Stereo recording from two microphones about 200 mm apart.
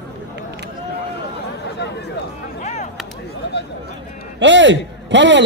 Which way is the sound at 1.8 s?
60° left (ahead or behind).